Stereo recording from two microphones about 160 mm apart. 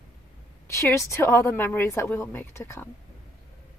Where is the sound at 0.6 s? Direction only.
20° left (ahead or behind).